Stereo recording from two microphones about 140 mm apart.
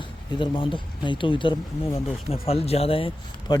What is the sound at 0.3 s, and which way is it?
Speech, 35° left (ahead or behind).